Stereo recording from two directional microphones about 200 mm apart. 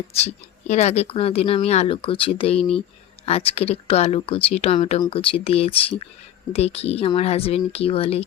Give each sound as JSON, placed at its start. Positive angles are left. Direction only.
{"t": 0.1, "sound": "speech", "side_deg": 30}